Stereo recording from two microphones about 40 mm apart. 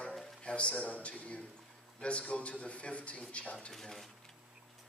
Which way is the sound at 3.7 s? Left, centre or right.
Centre.